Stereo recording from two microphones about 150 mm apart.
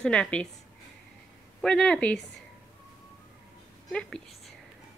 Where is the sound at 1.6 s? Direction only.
5° left (ahead or behind).